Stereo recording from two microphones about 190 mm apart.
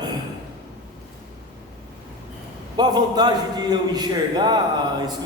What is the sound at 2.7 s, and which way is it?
A man's voice, 20° right (ahead or behind).